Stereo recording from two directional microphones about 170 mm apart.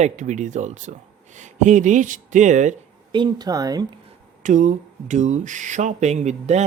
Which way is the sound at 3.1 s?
30° right (ahead or behind).